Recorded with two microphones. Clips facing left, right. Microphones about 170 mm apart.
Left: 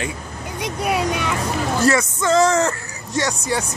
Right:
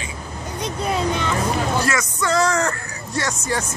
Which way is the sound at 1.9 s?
25° left (ahead or behind).